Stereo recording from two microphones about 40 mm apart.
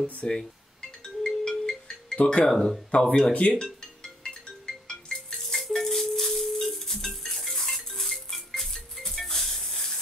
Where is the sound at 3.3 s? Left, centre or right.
Left.